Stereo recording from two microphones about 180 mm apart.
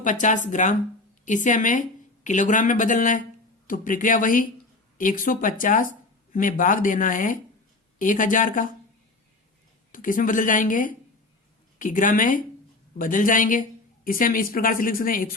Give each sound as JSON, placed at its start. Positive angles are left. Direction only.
{"t": 0.0, "sound": "speech", "side_deg": 45}
{"t": 9.9, "sound": "speech", "side_deg": 50}